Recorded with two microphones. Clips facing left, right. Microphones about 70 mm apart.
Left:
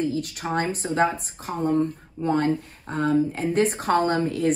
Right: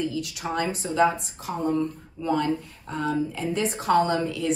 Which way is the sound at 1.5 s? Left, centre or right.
Left.